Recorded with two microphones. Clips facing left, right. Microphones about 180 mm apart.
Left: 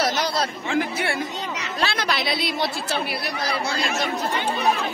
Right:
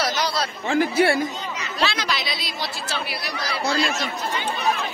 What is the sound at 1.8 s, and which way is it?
Speech, 55° left (ahead or behind).